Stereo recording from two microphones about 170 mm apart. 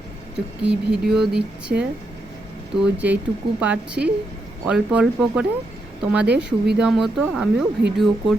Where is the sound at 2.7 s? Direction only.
5° right (ahead or behind).